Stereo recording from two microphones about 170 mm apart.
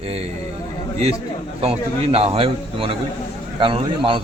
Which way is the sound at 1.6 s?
35° right (ahead or behind).